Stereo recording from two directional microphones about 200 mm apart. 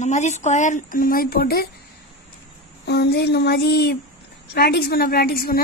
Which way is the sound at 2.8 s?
55° left (ahead or behind).